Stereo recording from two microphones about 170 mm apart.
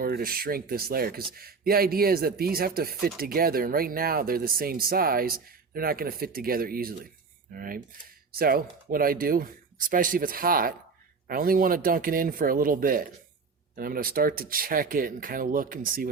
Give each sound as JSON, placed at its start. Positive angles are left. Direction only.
{"t": 0.0, "sound": "speech", "side_deg": -60}